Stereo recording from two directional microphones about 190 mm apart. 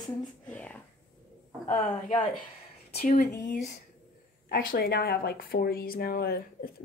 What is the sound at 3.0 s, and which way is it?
Speech, 45° left (ahead or behind).